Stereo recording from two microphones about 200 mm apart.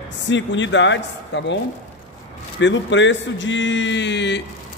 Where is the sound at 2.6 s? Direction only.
65° left (ahead or behind).